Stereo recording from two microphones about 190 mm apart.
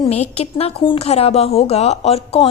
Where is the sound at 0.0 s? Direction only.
35° left (ahead or behind).